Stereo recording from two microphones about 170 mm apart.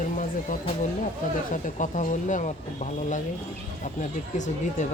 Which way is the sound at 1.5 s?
45° left (ahead or behind).